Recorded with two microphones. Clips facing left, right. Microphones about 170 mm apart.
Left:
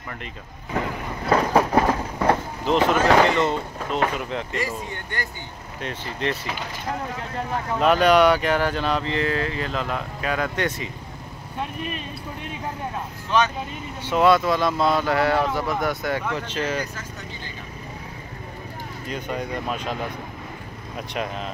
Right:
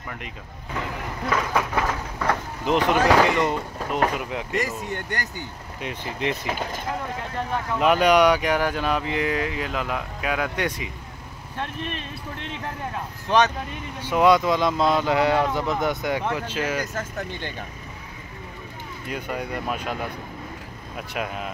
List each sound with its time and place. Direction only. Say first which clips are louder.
1.3 s vehicle: left 6 dB; 35° left (ahead or behind)
2.6 s speech: even; 15° right (ahead or behind)
4.6 s speech: right 2 dB; 45° right (ahead or behind)
5.8 s speech: even; 10° right (ahead or behind)
7.8 s speech: left 1 dB; 10° right (ahead or behind)
11.5 s speech: left 1 dB; 5° left (ahead or behind)
14.0 s speech: even; 15° right (ahead or behind)
16.9 s speech: right 6 dB; 50° right (ahead or behind)
19.0 s speech: left 1 dB; 10° right (ahead or behind)
21.1 s speech: left 1 dB; 5° right (ahead or behind)